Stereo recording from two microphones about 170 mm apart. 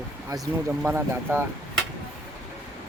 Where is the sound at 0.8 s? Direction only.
15° right (ahead or behind).